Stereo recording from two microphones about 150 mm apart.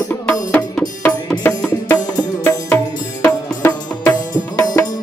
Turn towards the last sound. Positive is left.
turn(degrees=20)  # may be behind; listen again after turning